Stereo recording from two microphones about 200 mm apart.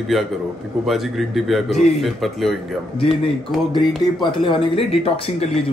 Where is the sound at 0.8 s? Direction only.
Centre (ahead or behind).